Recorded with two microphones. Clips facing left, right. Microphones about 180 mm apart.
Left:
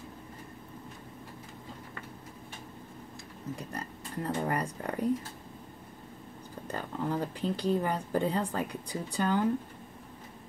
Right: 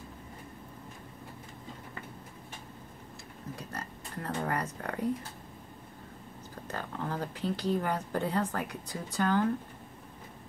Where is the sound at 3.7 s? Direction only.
15° left (ahead or behind).